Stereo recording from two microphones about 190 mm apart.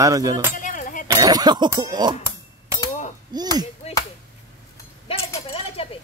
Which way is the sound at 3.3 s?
20° right (ahead or behind).